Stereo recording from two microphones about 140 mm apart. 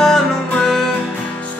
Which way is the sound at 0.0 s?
5° left (ahead or behind).